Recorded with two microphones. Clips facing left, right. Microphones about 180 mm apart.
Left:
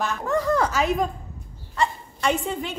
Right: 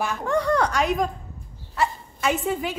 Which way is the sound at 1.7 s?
5° right (ahead or behind).